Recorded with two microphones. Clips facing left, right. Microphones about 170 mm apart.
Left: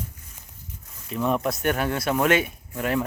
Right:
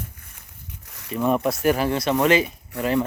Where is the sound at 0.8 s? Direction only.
80° right.